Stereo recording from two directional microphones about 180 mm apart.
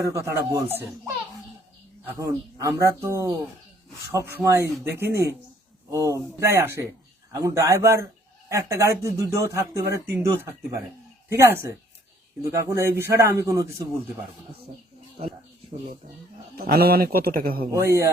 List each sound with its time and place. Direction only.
0.0 s speech: 15° right (ahead or behind)
4.4 s speech: 15° right (ahead or behind)
16.6 s a man's voice: 60° right (ahead or behind)
17.7 s speech: 15° right (ahead or behind)